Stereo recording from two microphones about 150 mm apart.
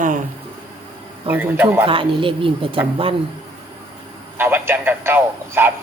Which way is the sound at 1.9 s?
35° right (ahead or behind).